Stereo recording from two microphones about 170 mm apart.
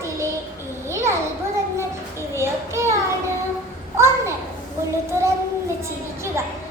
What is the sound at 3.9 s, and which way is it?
Speech, 15° right (ahead or behind).